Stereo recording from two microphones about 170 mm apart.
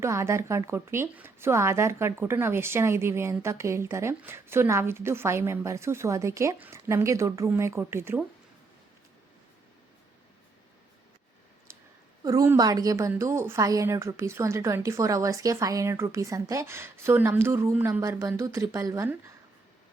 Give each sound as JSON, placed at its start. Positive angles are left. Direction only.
{"t": 0.0, "sound": "a woman's voice", "side_deg": -15}
{"t": 12.2, "sound": "a woman's voice", "side_deg": -20}